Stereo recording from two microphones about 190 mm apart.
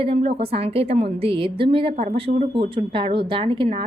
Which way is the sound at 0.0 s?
30° right (ahead or behind).